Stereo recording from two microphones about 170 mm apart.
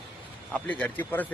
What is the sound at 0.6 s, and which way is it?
Speech, 10° left (ahead or behind).